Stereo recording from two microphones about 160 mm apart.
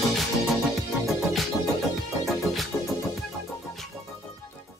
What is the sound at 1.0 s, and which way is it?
Music, centre (ahead or behind).